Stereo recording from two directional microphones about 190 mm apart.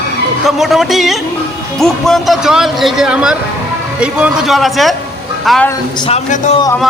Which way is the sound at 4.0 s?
5° right (ahead or behind).